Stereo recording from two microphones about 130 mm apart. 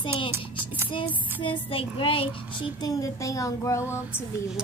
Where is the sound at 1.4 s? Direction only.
40° left (ahead or behind).